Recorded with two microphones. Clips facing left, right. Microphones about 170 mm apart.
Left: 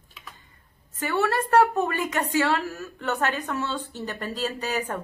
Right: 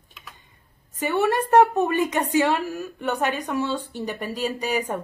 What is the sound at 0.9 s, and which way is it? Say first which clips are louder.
A woman's voice: right 3 dB; 15° right (ahead or behind).